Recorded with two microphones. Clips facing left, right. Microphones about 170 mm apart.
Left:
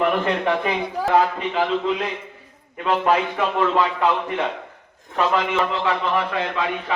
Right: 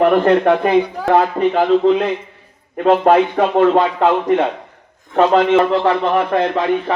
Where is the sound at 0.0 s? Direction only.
45° right (ahead or behind).